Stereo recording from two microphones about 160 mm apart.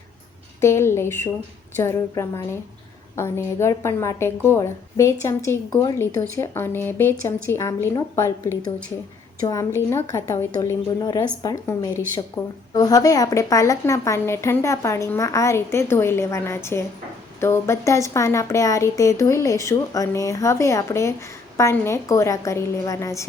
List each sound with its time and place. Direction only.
0.6 s speech: 15° left (ahead or behind)